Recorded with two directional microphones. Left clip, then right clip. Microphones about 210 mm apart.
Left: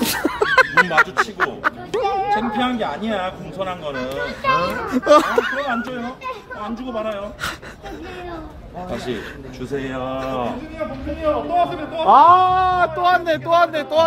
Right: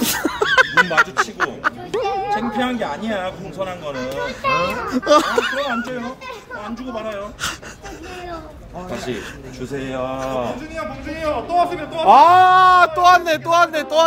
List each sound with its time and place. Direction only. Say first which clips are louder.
0.0 s a sound: even; centre (ahead or behind)
2.0 s music: left 2 dB; 15° left (ahead or behind)
2.5 s a man's voice: even; 10° right (ahead or behind)
4.2 s a child's voice: left 1 dB; 10° left (ahead or behind)
4.8 s speech: left 2 dB; centre (ahead or behind)
7.0 s speech: left 1 dB; centre (ahead or behind)
9.9 s speech: right 4 dB; 5° right (ahead or behind)
11.2 s a man's voice: even; 30° right (ahead or behind); by 14.0 s 15° right (ahead or behind)